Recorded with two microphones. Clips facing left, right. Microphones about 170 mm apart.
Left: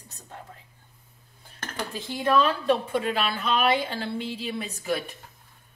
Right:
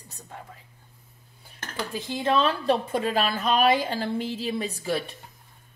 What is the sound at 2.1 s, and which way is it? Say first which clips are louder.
A woman's voice: left 1 dB; 25° right (ahead or behind).